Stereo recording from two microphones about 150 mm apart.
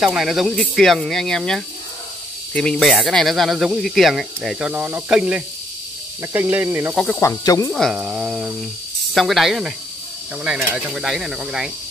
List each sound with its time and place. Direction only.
0.0 s speech: centre (ahead or behind)
7.2 s speech: 20° left (ahead or behind)
7.7 s speech: centre (ahead or behind)
10.8 s speech: 5° right (ahead or behind)